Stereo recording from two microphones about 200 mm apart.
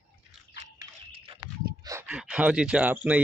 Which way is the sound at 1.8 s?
15° right (ahead or behind).